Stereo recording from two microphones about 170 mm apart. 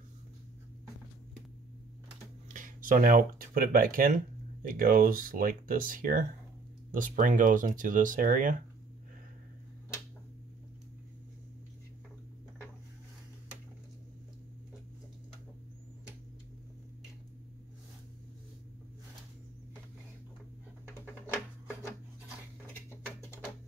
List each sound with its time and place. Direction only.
2.4 s speech: 50° right (ahead or behind)